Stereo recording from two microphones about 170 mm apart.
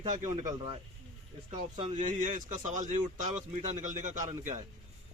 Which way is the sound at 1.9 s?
50° right (ahead or behind).